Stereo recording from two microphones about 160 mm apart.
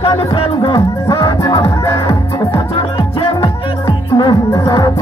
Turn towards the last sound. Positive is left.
turn(degrees=25)  # may be behind; listen again after turning